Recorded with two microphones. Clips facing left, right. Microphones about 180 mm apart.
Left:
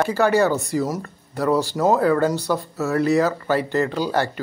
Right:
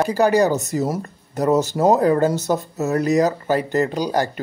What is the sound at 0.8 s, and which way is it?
Speech, 25° right (ahead or behind).